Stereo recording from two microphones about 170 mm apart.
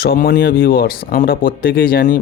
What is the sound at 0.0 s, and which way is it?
Speech, 60° left (ahead or behind).